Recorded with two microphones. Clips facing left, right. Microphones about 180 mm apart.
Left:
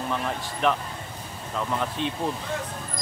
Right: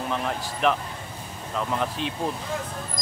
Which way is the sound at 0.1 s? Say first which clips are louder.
Right 1 dB; centre (ahead or behind).